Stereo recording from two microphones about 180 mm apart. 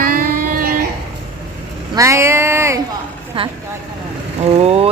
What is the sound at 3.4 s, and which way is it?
Speech, 30° right (ahead or behind).